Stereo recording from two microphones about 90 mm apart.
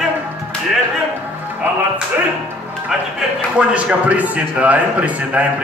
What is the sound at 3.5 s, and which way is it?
A man's voice, 15° right (ahead or behind).